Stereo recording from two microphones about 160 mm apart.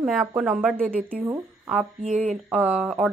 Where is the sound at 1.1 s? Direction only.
15° right (ahead or behind).